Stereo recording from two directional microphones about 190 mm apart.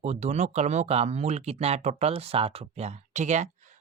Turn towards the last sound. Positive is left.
turn(degrees=-40)  # may be behind; listen again after turning